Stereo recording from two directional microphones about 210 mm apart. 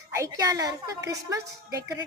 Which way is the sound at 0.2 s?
15° right (ahead or behind).